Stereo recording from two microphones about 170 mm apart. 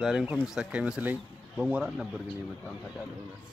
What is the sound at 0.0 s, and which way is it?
Speech, centre (ahead or behind).